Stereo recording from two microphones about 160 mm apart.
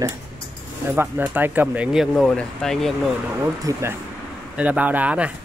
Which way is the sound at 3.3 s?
15° right (ahead or behind).